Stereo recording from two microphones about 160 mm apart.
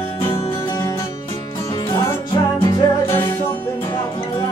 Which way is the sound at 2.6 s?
15° left (ahead or behind).